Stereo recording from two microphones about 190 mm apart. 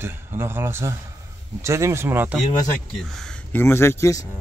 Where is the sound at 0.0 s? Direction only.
10° right (ahead or behind).